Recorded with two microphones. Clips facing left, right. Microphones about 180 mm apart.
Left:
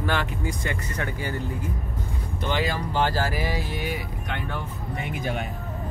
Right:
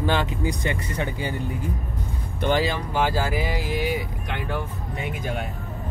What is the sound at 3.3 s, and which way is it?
Speech, 20° right (ahead or behind).